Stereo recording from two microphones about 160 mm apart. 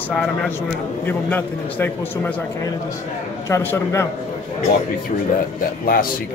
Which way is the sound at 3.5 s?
15° left (ahead or behind).